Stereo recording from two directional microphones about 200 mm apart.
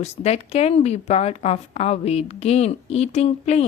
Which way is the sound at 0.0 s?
30° left (ahead or behind).